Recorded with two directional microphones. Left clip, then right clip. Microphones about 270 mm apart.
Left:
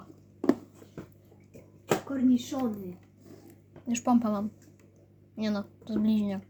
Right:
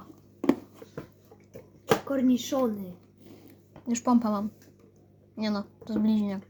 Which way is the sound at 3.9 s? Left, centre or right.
Centre.